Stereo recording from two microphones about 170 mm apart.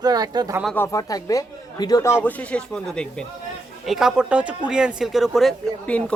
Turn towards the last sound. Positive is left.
turn(degrees=5)  # may be behind; listen again after turning